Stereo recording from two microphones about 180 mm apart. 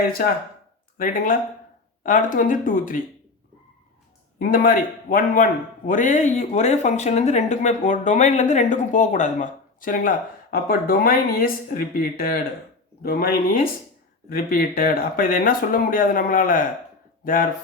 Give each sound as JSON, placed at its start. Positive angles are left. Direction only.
{"t": 0.9, "sound": "a man's voice", "side_deg": 50}
{"t": 4.4, "sound": "a man's voice", "side_deg": 50}